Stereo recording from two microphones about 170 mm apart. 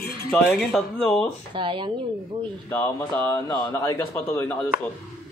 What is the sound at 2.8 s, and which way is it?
A man's voice, 20° left (ahead or behind).